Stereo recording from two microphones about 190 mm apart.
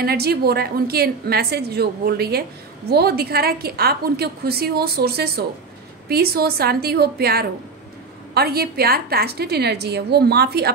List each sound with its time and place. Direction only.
0.0 s a woman's voice: 55° right (ahead or behind)